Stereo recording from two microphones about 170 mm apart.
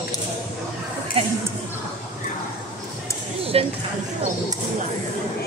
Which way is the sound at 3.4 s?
35° right (ahead or behind).